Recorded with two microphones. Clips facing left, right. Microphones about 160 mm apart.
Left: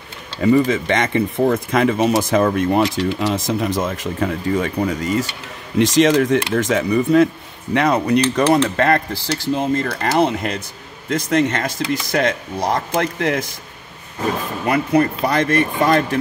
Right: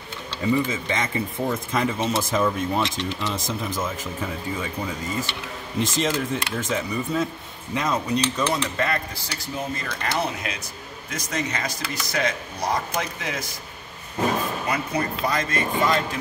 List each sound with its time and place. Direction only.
0.4 s speech: 65° left (ahead or behind)
14.7 s speech: 60° left (ahead or behind)